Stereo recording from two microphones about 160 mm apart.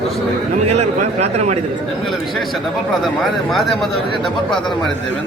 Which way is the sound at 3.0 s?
Centre (ahead or behind).